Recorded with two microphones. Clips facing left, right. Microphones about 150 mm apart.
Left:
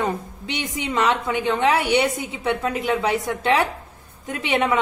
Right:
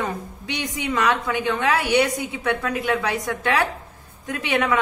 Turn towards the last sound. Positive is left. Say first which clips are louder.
# left 1 dB
turn(degrees=20)  # may be behind; listen again after turning